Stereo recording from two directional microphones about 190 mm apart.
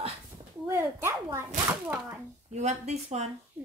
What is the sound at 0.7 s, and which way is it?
Speech, 10° right (ahead or behind).